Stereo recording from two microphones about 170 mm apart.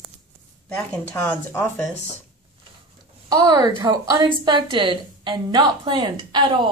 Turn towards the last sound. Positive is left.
turn(degrees=-25)  # may be behind; listen again after turning